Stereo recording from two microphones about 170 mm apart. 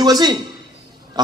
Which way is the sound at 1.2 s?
25° right (ahead or behind).